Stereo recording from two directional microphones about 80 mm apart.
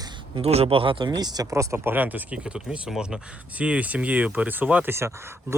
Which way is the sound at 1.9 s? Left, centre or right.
Right.